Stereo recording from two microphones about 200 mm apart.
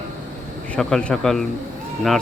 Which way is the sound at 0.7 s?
5° left (ahead or behind).